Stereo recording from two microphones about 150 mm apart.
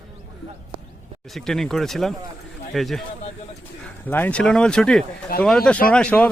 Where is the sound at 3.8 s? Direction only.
10° left (ahead or behind).